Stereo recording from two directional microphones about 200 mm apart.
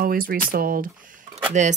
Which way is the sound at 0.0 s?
45° right (ahead or behind).